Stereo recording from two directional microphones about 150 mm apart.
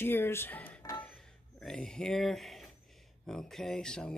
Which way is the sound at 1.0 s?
5° left (ahead or behind).